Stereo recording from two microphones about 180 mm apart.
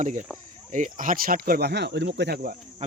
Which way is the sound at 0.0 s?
45° right (ahead or behind).